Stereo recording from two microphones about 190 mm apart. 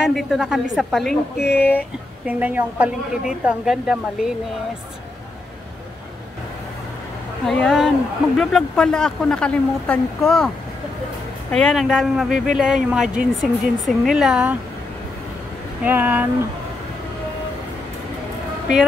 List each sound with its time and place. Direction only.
0.1 s speech: centre (ahead or behind)
1.4 s speech: 55° left (ahead or behind)
2.2 s speech: 5° right (ahead or behind)
7.4 s speech: centre (ahead or behind)
11.5 s speech: centre (ahead or behind)
15.8 s speech: 10° right (ahead or behind)